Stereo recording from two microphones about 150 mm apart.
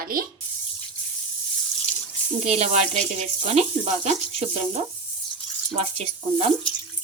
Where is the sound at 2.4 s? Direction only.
50° right (ahead or behind).